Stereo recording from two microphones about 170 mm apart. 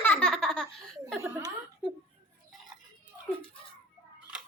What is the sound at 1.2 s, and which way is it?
Speech, 15° right (ahead or behind).